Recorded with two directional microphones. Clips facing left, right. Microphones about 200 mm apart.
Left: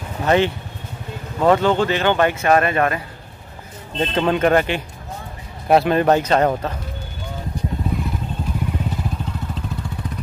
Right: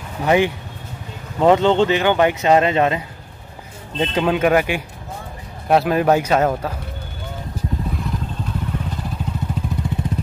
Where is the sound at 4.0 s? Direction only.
5° right (ahead or behind).